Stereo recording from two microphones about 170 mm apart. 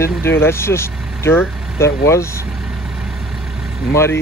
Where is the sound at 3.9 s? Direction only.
15° left (ahead or behind).